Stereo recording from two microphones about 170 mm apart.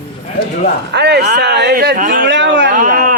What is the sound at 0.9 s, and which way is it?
Speech, 80° right.